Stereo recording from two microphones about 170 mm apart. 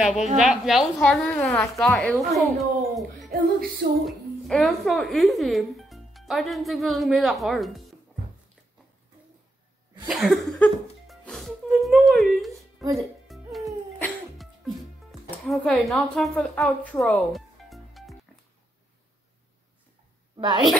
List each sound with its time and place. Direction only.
0.0 s a woman's voice: 5° right (ahead or behind)
10.0 s music: centre (ahead or behind)
15.0 s speech: centre (ahead or behind)
20.3 s a woman's voice: 25° right (ahead or behind)